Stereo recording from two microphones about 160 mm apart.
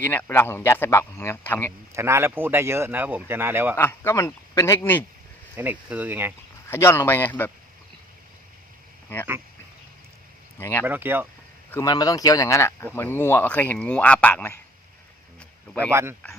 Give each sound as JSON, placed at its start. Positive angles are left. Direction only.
{"t": 0.0, "sound": "speech", "side_deg": 10}
{"t": 1.9, "sound": "speech", "side_deg": -15}
{"t": 3.8, "sound": "speech", "side_deg": 15}
{"t": 5.5, "sound": "speech", "side_deg": -10}
{"t": 6.7, "sound": "speech", "side_deg": 15}
{"t": 10.6, "sound": "speech", "side_deg": 15}
{"t": 10.8, "sound": "speech", "side_deg": -15}
{"t": 11.7, "sound": "speech", "side_deg": 25}
{"t": 15.9, "sound": "speech", "side_deg": -15}